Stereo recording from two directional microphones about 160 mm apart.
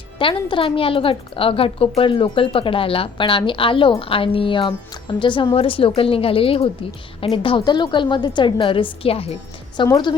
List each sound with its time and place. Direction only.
0.2 s a woman's voice: 30° left (ahead or behind)